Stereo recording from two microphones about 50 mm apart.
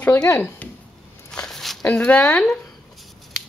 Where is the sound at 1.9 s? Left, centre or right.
Left.